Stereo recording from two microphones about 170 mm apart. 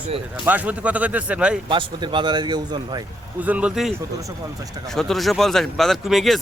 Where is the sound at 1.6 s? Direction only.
30° right (ahead or behind).